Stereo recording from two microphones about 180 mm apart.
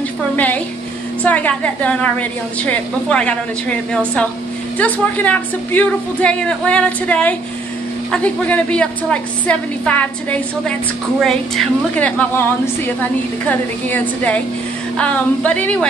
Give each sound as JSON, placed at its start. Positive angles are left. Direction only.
{"t": 1.2, "sound": "a woman's voice", "side_deg": 10}
{"t": 13.5, "sound": "a woman's voice", "side_deg": 10}